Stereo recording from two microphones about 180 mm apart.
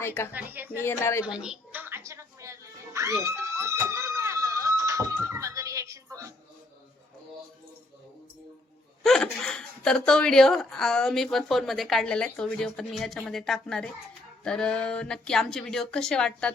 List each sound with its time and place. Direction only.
0.0 s speech: 15° left (ahead or behind)
0.3 s speech: 10° right (ahead or behind)
0.9 s speech: 15° left (ahead or behind)
1.2 s music: 5° right (ahead or behind)
9.0 s speech: 5° left (ahead or behind)